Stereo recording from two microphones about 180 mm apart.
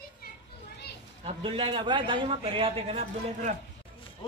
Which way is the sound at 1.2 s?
30° right (ahead or behind).